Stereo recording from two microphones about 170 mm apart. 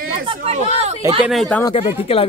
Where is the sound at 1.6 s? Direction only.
35° left (ahead or behind).